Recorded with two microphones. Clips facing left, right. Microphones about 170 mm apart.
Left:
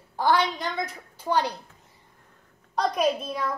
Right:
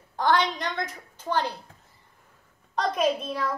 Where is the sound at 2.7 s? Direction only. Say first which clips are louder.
Left 1 dB; centre (ahead or behind).